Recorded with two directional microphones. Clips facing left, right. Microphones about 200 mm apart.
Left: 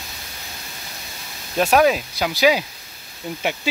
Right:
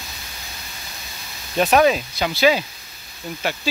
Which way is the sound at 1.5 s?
Centre (ahead or behind).